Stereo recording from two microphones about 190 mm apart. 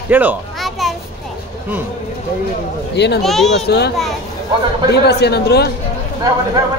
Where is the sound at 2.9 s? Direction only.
65° left (ahead or behind).